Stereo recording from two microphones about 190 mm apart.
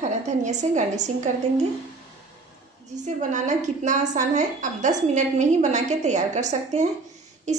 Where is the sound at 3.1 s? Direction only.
40° right (ahead or behind).